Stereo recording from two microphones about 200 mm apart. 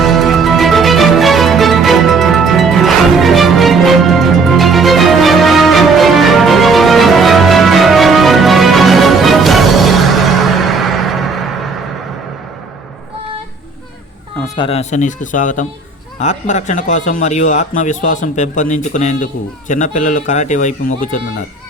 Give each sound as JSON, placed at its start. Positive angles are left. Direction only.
{"t": 0.0, "sound": "music", "side_deg": 0}
{"t": 14.5, "sound": "speech", "side_deg": 25}